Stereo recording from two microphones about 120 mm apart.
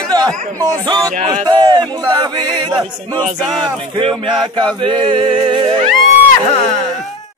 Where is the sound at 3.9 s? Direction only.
45° right (ahead or behind).